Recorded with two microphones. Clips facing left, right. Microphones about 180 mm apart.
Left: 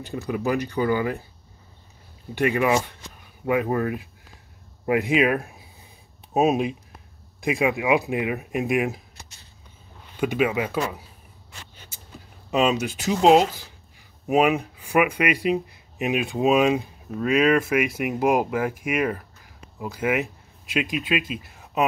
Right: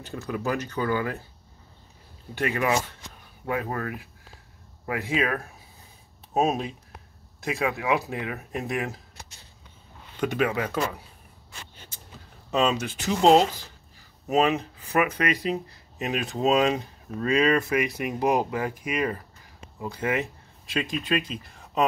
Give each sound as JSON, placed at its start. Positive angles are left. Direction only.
{"t": 0.0, "sound": "speech", "side_deg": 10}
{"t": 2.3, "sound": "speech", "side_deg": 15}
{"t": 10.1, "sound": "speech", "side_deg": 10}
{"t": 12.4, "sound": "speech", "side_deg": 10}
{"t": 19.8, "sound": "speech", "side_deg": 10}